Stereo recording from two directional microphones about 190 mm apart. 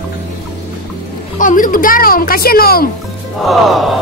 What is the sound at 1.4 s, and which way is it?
A child's voice, 45° left (ahead or behind).